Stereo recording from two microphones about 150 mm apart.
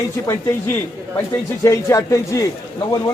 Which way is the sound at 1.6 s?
20° left (ahead or behind).